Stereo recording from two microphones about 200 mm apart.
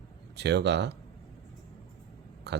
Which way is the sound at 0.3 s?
55° right (ahead or behind).